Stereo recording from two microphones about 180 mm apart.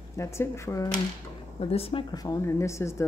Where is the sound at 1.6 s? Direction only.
35° left (ahead or behind).